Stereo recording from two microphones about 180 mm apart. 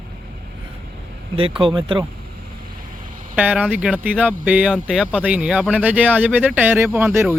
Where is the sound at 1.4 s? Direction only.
30° right (ahead or behind).